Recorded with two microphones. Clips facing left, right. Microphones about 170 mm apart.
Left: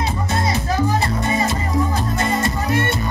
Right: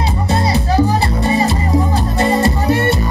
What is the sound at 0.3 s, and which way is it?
Music, 35° right (ahead or behind).